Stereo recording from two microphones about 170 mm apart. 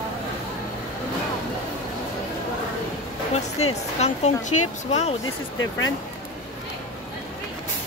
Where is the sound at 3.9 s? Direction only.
40° left (ahead or behind).